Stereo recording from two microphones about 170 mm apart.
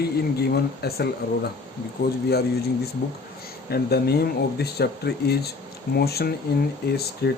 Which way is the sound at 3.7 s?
70° left (ahead or behind).